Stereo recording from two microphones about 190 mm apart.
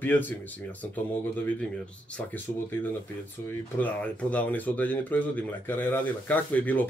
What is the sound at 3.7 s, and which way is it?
Speech, 10° left (ahead or behind).